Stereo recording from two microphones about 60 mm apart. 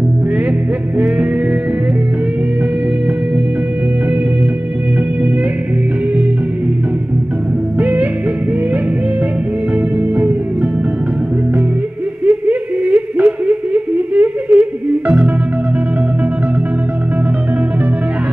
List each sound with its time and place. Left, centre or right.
0.9 s music: right
7.8 s music: right
9.9 s music: right
12.3 s humming: right